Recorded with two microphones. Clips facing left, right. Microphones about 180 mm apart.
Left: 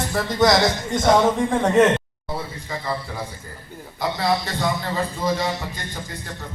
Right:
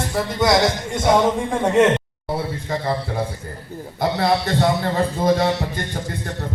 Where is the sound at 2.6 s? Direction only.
50° right (ahead or behind).